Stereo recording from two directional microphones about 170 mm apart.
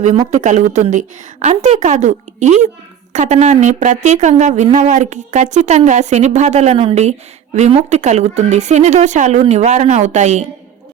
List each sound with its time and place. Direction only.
0.3 s speech: 45° right (ahead or behind)